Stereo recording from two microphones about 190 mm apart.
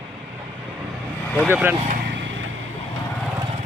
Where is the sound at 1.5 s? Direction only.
10° right (ahead or behind).